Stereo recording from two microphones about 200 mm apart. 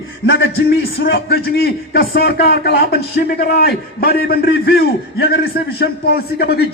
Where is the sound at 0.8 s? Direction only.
50° left (ahead or behind).